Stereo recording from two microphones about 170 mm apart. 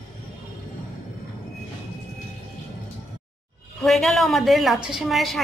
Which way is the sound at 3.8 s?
Centre (ahead or behind).